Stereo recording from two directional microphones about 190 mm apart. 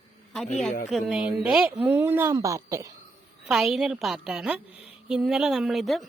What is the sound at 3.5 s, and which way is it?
Speech, centre (ahead or behind).